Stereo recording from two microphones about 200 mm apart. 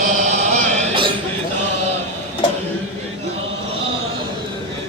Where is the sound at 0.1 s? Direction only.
35° right (ahead or behind).